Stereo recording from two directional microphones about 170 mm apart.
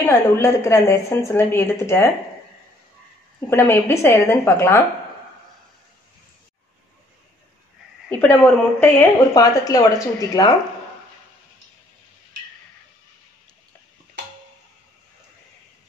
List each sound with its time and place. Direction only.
0.0 s a woman's voice: 15° left (ahead or behind)
3.3 s a woman's voice: 15° left (ahead or behind)
8.1 s a woman's voice: 10° left (ahead or behind)